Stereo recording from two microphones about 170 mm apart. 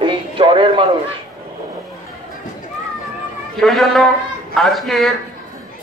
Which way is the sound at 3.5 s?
Centre (ahead or behind).